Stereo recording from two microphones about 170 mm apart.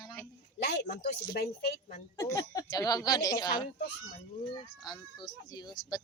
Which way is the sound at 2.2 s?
20° left (ahead or behind).